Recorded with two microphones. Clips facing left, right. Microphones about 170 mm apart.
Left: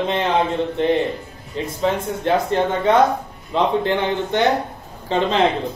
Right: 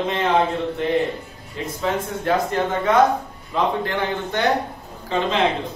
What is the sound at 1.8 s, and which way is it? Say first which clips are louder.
Speech: left 3 dB; 30° left (ahead or behind).